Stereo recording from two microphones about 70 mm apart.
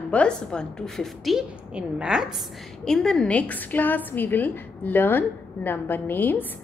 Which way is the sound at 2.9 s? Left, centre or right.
Centre.